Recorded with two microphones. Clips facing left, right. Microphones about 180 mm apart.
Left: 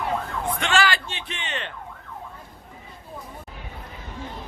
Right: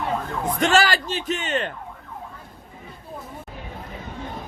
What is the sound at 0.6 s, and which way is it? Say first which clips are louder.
Speech: right 5 dB; 40° right (ahead or behind).